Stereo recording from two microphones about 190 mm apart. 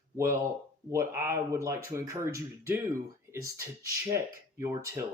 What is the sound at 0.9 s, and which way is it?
Speech, 15° right (ahead or behind).